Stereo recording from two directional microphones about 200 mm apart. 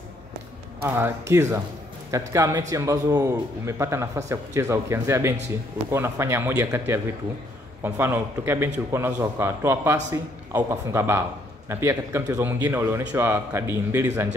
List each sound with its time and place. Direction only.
0.8 s a man's voice: 10° right (ahead or behind)